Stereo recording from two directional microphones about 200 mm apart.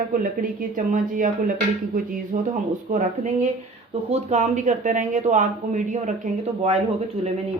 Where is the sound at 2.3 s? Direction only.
45° right (ahead or behind).